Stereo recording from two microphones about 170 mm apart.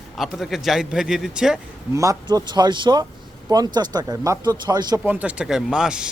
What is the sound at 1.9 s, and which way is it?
Speech, 20° right (ahead or behind).